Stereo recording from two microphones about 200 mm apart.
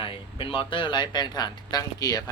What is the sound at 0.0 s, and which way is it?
Speech, 25° left (ahead or behind).